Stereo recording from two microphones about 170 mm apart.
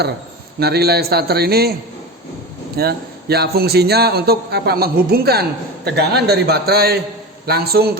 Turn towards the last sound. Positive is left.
turn(degrees=-65)  # may be behind; listen again after turning